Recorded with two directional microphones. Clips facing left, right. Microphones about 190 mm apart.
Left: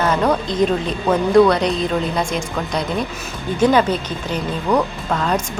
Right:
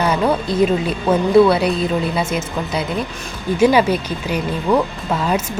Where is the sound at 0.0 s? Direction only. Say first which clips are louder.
Even; 10° right (ahead or behind).